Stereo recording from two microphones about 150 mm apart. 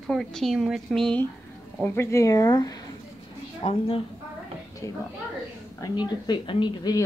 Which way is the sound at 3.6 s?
40° left (ahead or behind).